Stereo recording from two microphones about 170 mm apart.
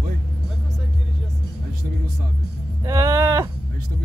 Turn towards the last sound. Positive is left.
turn(degrees=-15)  # may be behind; listen again after turning